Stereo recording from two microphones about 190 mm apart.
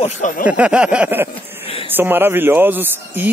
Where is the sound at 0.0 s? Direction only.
40° left (ahead or behind).